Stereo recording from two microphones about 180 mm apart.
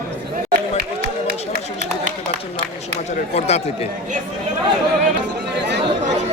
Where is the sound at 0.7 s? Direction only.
60° right (ahead or behind).